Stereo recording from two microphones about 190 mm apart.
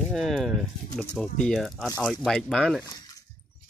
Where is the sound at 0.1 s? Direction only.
Centre (ahead or behind).